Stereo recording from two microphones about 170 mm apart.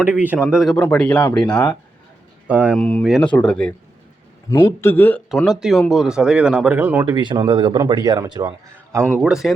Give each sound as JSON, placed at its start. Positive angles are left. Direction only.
{"t": 0.1, "sound": "speech", "side_deg": -10}
{"t": 2.5, "sound": "speech", "side_deg": -10}
{"t": 2.7, "sound": "speech", "side_deg": 5}
{"t": 4.8, "sound": "speech", "side_deg": 10}
{"t": 5.4, "sound": "speech", "side_deg": 0}
{"t": 7.0, "sound": "speech", "side_deg": -25}
{"t": 9.2, "sound": "speech", "side_deg": -5}